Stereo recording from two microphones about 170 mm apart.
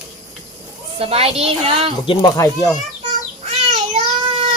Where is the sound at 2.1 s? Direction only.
25° left (ahead or behind).